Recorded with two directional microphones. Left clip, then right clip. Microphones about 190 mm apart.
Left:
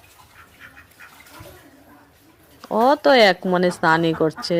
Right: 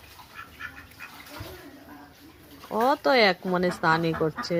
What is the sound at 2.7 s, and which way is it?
Speech, 35° left (ahead or behind).